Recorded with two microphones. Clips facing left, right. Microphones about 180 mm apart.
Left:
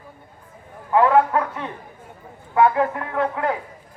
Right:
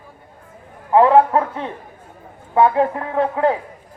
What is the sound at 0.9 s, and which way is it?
A man's voice, 30° right (ahead or behind).